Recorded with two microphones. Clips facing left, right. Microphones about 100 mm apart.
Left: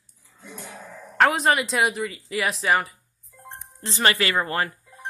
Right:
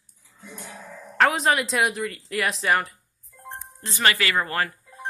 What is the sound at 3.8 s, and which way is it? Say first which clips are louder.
Speech: left 1 dB; 30° left (ahead or behind).